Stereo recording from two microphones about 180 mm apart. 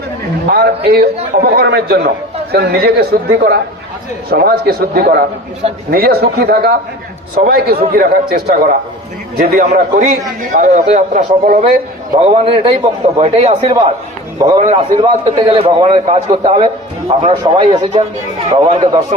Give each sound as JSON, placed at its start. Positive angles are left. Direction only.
{"t": 0.5, "sound": "a man's voice", "side_deg": -60}
{"t": 12.2, "sound": "a man's voice", "side_deg": -30}